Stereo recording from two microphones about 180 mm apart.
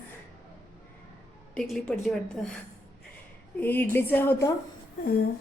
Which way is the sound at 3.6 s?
10° left (ahead or behind).